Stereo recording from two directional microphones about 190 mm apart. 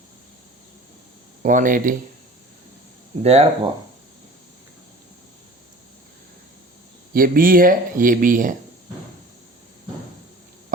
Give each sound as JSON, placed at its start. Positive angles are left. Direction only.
{"t": 1.4, "sound": "speech", "side_deg": -45}
{"t": 3.2, "sound": "speech", "side_deg": -35}
{"t": 7.1, "sound": "speech", "side_deg": -50}